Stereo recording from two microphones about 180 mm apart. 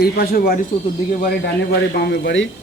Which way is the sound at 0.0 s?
55° left (ahead or behind).